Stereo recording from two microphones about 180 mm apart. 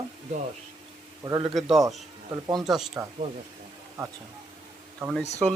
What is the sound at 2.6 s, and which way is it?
Speech, centre (ahead or behind).